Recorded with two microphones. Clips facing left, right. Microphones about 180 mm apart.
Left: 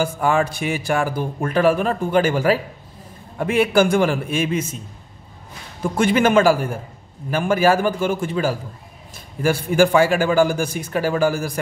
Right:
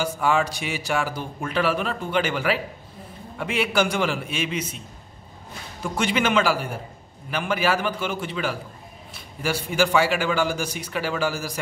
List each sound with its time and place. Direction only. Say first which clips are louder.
0.0 s a man's voice: left 3 dB; 50° left (ahead or behind)
5.9 s a man's voice: left 6 dB; 50° left (ahead or behind)